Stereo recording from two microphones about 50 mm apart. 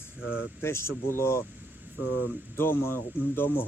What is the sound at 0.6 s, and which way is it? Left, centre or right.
Speech, left.